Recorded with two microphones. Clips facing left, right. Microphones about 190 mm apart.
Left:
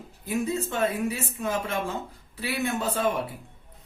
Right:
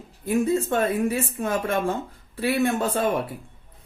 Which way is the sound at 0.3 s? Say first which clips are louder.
Right 6 dB; 50° right (ahead or behind).